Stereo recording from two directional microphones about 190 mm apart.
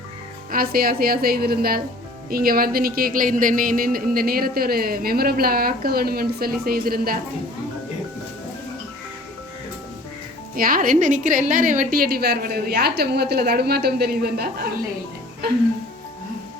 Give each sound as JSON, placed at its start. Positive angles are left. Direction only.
{"t": 0.5, "sound": "speech", "side_deg": -50}
{"t": 10.5, "sound": "a woman's voice", "side_deg": -50}